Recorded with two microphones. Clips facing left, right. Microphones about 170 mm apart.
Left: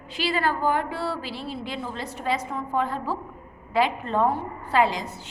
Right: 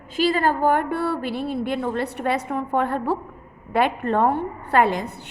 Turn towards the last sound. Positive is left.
turn(degrees=-60)  # may be behind; listen again after turning